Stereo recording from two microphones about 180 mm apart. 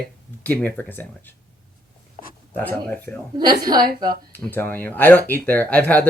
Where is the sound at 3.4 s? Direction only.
20° right (ahead or behind).